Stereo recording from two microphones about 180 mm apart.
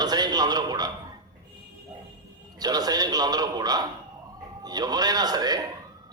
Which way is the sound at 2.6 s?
20° right (ahead or behind).